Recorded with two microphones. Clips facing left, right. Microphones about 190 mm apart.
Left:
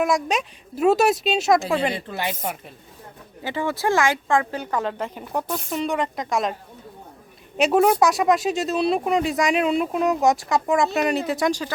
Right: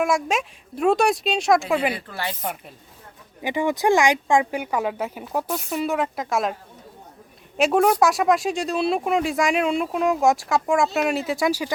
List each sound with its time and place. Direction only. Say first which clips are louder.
0.0 s speech: even; centre (ahead or behind)
1.9 s a woman's voice: left 2 dB; 25° left (ahead or behind)
2.4 s speech: left 1 dB; centre (ahead or behind)
3.4 s speech: right 3 dB; 15° right (ahead or behind)